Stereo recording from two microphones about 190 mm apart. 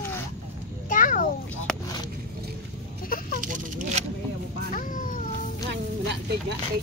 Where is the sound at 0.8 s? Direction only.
45° left (ahead or behind).